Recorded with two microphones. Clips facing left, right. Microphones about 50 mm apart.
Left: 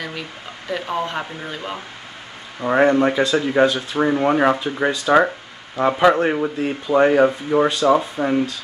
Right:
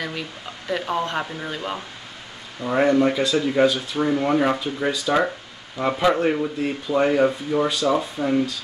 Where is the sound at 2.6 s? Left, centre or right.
Left.